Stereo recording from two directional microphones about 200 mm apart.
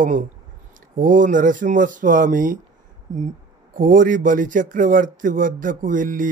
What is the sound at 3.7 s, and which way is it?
Speech, 40° right (ahead or behind).